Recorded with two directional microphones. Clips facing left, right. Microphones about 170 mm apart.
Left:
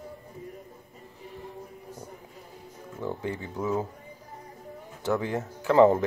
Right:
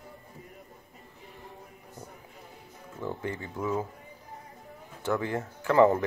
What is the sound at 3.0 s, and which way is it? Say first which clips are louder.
Speech: left 2 dB; 20° left (ahead or behind).